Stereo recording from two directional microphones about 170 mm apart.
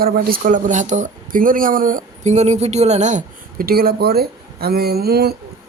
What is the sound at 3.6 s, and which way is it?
Speech, 60° right (ahead or behind).